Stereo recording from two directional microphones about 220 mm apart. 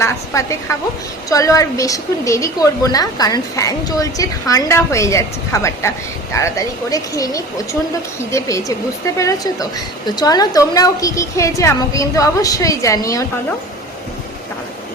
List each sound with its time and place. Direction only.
0.0 s a woman's voice: 15° left (ahead or behind)